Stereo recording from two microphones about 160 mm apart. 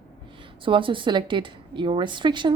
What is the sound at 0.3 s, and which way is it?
A woman's voice, 30° right (ahead or behind).